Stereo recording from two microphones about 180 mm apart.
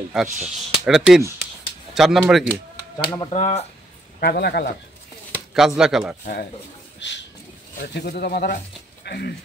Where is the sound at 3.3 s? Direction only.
40° left (ahead or behind).